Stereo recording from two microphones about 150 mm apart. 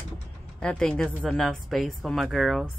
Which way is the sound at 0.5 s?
5° left (ahead or behind).